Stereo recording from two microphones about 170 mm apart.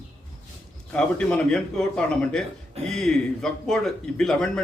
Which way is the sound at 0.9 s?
5° left (ahead or behind).